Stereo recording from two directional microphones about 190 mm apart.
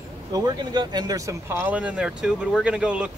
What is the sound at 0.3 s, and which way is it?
Speech, 20° right (ahead or behind).